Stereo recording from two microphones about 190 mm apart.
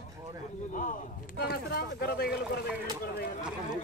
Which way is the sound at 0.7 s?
45° left (ahead or behind).